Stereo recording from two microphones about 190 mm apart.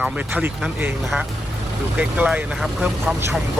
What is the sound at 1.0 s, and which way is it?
A man's voice, centre (ahead or behind).